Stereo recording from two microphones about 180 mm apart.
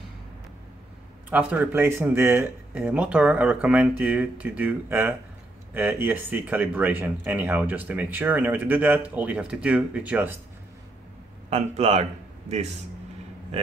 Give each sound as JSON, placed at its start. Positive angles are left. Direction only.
{"t": 1.3, "sound": "speech", "side_deg": -10}
{"t": 11.5, "sound": "a man's voice", "side_deg": -35}